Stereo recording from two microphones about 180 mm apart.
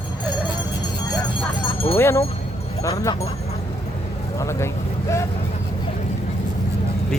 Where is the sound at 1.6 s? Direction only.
30° left (ahead or behind).